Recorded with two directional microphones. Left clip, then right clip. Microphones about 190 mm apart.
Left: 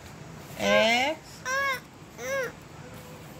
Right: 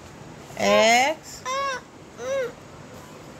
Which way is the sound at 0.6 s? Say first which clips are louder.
Right 5 dB; 25° right (ahead or behind).